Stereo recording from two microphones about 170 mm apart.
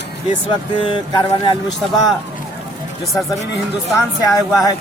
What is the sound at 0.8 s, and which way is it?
Speech, 30° left (ahead or behind).